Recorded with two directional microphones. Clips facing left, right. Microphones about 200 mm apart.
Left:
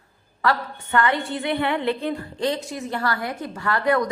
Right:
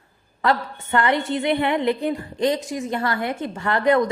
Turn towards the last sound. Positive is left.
turn(degrees=-20)  # may be behind; listen again after turning